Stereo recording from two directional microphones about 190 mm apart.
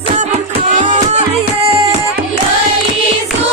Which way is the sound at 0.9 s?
35° right (ahead or behind).